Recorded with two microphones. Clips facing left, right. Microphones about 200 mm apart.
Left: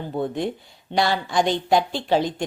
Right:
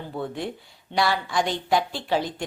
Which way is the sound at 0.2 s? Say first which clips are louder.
Left 5 dB; 20° left (ahead or behind).